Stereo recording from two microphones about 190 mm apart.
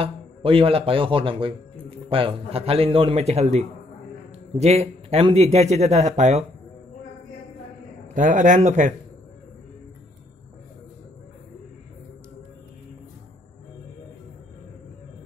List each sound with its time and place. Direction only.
0.0 s a man's voice: 30° right (ahead or behind)
4.6 s speech: 35° right (ahead or behind)
8.1 s speech: 40° right (ahead or behind)